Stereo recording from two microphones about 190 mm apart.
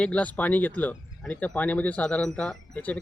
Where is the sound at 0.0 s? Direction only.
5° left (ahead or behind).